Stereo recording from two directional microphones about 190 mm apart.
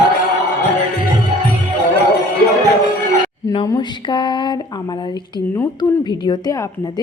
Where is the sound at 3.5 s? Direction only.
20° left (ahead or behind).